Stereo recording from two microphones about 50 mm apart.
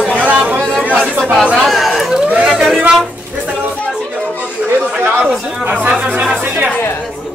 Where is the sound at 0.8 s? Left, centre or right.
Right.